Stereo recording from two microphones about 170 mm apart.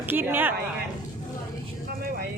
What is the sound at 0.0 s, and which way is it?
Speech, 10° right (ahead or behind).